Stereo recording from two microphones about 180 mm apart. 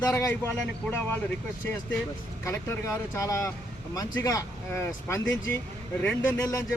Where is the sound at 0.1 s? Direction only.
15° left (ahead or behind).